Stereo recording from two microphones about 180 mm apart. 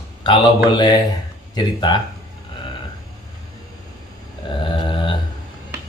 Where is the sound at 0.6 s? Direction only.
25° left (ahead or behind).